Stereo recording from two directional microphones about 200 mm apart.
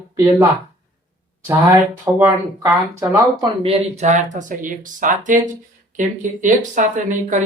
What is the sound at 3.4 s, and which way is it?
Speech, 30° right (ahead or behind).